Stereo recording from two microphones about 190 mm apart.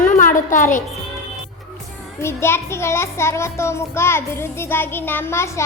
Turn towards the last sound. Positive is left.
turn(degrees=15)  # may be behind; listen again after turning